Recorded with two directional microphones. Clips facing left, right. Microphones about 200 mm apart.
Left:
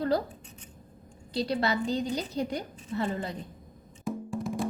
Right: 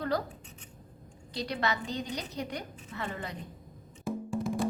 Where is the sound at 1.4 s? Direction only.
30° left (ahead or behind).